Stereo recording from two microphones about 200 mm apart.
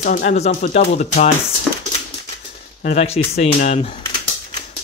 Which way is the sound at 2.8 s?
30° left (ahead or behind).